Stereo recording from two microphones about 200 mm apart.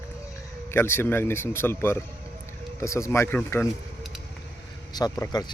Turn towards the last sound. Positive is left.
turn(degrees=20)  # may be behind; listen again after turning